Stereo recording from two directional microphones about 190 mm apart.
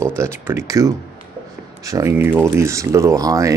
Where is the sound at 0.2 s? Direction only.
15° right (ahead or behind).